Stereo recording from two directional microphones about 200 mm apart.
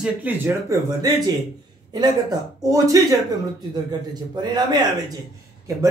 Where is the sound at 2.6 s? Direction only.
15° right (ahead or behind).